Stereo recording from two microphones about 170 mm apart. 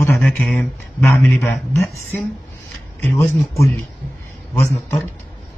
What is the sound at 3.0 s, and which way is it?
A man's voice, 15° left (ahead or behind).